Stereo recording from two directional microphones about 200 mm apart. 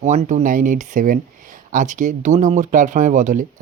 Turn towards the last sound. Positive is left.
turn(degrees=-40)  # may be behind; listen again after turning